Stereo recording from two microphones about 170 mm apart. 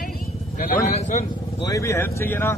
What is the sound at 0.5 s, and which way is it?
Speech, 45° left (ahead or behind).